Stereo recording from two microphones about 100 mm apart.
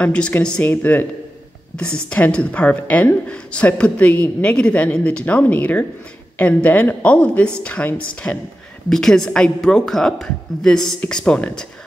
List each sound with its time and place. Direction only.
0.0 s a woman's voice: 10° left (ahead or behind)